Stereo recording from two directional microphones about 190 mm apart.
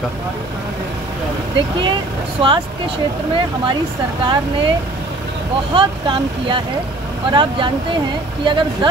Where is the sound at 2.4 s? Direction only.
25° right (ahead or behind).